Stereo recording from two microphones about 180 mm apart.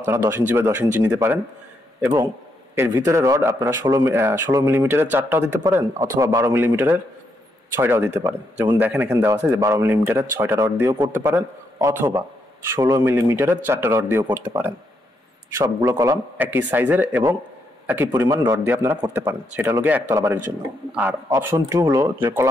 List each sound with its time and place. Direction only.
0.0 s a man's voice: 15° right (ahead or behind)
19.5 s a man's voice: 10° right (ahead or behind)